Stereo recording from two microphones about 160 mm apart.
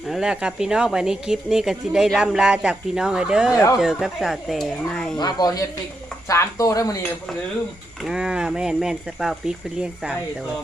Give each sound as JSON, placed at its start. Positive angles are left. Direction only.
{"t": 0.0, "sound": "speech", "side_deg": -5}
{"t": 5.1, "sound": "speech", "side_deg": 25}
{"t": 8.0, "sound": "speech", "side_deg": -5}